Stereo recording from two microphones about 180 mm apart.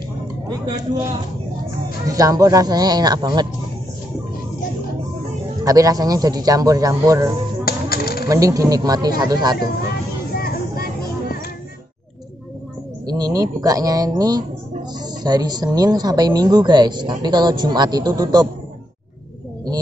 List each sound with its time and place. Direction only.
2.0 s a woman's voice: 20° right (ahead or behind)
5.6 s a woman's voice: 20° right (ahead or behind)
7.6 s typewriter: 60° left (ahead or behind)
8.3 s a woman's voice: 20° right (ahead or behind)
10.3 s a sound: 55° left (ahead or behind)
13.0 s a woman's voice: 20° right (ahead or behind)